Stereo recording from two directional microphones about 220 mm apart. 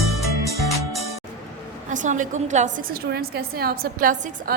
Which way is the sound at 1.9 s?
35° right (ahead or behind).